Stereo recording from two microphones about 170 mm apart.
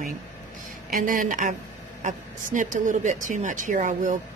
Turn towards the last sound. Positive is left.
turn(degrees=-50)  # may be behind; listen again after turning